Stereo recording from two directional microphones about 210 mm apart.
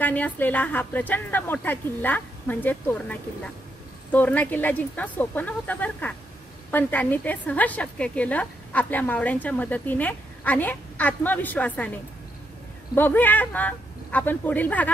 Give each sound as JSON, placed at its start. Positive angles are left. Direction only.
{"t": 0.0, "sound": "a woman's voice", "side_deg": 10}